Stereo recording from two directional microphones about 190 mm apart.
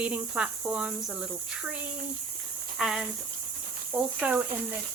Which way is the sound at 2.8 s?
5° right (ahead or behind).